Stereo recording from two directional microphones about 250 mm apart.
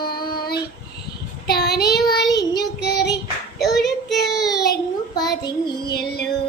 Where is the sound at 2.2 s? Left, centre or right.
Centre.